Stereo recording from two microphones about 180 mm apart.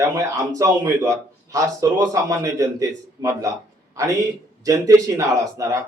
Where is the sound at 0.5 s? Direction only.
20° right (ahead or behind).